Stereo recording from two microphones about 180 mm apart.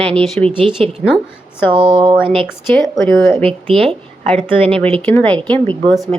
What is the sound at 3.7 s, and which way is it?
Speech, 30° right (ahead or behind).